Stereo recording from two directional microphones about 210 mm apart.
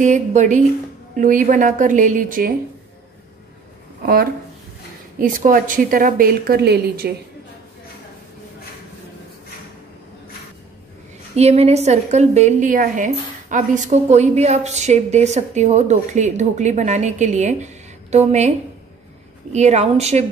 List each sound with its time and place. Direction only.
0.0 s a woman's voice: 35° right (ahead or behind)
4.0 s speech: 45° right (ahead or behind)
11.3 s a woman's voice: 30° right (ahead or behind)
19.5 s a woman's voice: 30° right (ahead or behind)